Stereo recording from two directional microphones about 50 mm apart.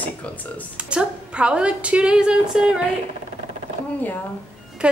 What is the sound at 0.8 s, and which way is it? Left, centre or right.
A woman's voice, right.